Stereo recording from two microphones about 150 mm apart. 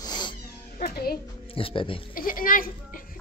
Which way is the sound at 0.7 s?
90° left.